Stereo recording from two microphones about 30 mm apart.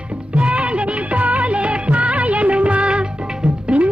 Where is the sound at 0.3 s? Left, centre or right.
Right.